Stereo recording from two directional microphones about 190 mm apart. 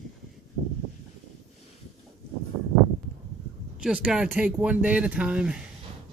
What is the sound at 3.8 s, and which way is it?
Speech, 5° right (ahead or behind).